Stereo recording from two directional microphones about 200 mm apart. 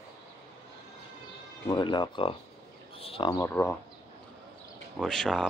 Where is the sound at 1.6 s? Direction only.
20° left (ahead or behind).